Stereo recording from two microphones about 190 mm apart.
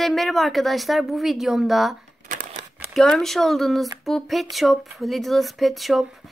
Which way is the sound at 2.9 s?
Centre (ahead or behind).